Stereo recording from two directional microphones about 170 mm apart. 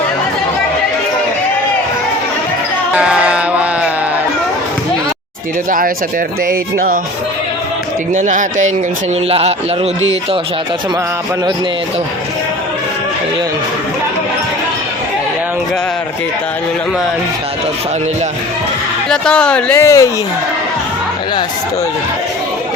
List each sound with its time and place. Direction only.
2.9 s a sound: 5° right (ahead or behind)
6.5 s speech: 55° right (ahead or behind)
8.1 s speech: 45° right (ahead or behind)
19.0 s speech: 5° left (ahead or behind)